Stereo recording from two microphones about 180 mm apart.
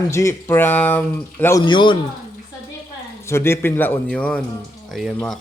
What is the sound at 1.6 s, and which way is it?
Speech, 25° left (ahead or behind).